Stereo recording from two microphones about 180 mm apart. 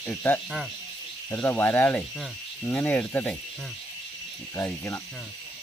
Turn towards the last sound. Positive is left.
turn(degrees=15)  # may be behind; listen again after turning